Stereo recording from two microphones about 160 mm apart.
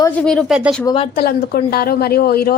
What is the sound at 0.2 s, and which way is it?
Speech, 5° left (ahead or behind).